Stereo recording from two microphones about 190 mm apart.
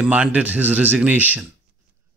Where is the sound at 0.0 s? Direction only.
5° right (ahead or behind).